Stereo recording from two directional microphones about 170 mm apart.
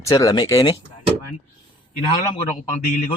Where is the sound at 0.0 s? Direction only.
20° left (ahead or behind).